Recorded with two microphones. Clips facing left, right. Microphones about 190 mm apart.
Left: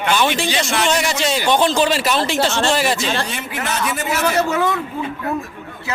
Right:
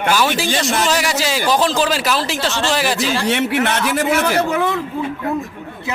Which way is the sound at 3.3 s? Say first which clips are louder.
Right 8 dB; 70° right (ahead or behind).